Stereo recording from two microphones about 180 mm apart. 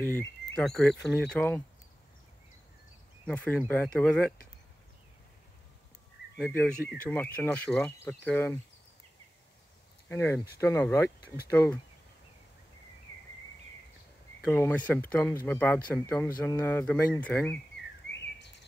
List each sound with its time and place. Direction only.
0.2 s speech: 5° left (ahead or behind)
3.3 s speech: 10° left (ahead or behind)
6.3 s speech: 5° left (ahead or behind)
10.0 s speech: 10° left (ahead or behind)
14.5 s speech: 10° left (ahead or behind)